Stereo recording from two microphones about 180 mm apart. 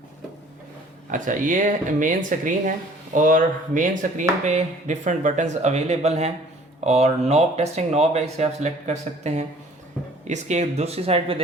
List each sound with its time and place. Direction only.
1.1 s speech: 45° right (ahead or behind)